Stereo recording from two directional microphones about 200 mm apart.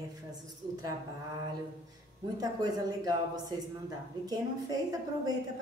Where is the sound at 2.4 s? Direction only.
20° right (ahead or behind).